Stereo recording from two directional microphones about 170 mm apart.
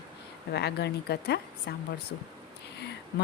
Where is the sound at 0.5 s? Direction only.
80° left.